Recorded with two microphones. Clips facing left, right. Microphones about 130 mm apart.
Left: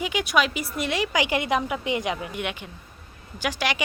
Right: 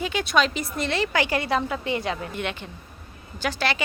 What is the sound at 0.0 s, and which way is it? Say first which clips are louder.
Speech: right 1 dB; 15° left (ahead or behind).